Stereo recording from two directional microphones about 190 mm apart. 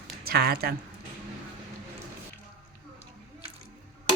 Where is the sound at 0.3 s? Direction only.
55° right (ahead or behind).